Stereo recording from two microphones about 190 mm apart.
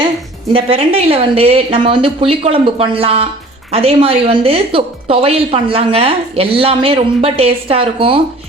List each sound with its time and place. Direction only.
0.5 s speech: 30° right (ahead or behind)